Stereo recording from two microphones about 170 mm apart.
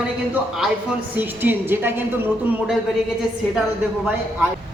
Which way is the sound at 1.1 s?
10° right (ahead or behind).